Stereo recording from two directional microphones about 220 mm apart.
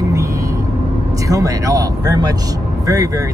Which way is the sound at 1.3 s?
15° right (ahead or behind).